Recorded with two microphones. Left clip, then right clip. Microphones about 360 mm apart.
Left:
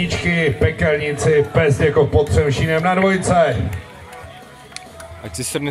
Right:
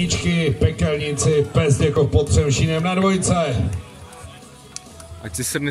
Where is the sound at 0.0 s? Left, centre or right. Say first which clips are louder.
Left 4 dB; left.